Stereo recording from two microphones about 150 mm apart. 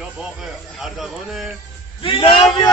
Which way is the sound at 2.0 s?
35° left (ahead or behind).